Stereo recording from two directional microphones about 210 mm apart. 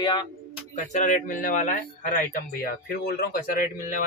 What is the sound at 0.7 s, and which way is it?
Speech, 35° left (ahead or behind).